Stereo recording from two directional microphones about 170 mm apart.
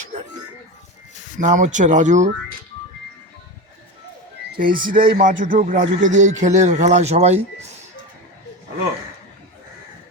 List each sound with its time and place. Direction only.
0.0 s a sound: 45° right (ahead or behind)
1.4 s speech: 45° right (ahead or behind)
4.5 s speech: 55° right (ahead or behind)